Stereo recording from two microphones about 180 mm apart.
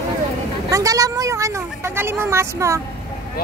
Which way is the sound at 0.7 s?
20° right (ahead or behind).